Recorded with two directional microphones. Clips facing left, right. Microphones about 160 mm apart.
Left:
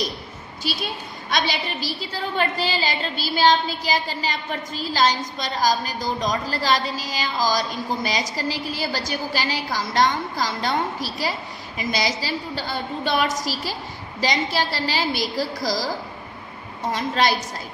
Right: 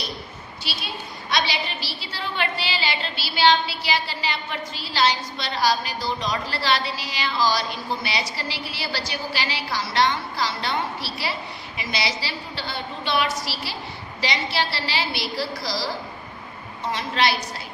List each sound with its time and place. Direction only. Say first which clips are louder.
1.3 s a woman's voice: left 1 dB; 50° left (ahead or behind)
16.9 s a woman's voice: left 2 dB; 45° left (ahead or behind)